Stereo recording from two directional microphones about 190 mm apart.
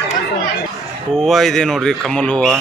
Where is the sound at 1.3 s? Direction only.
Centre (ahead or behind).